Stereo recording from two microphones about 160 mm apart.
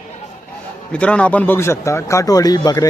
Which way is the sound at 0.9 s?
5° left (ahead or behind).